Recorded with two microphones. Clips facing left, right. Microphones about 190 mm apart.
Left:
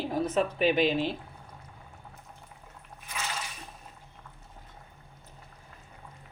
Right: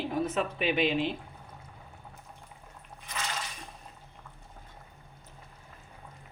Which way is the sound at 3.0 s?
10° left (ahead or behind).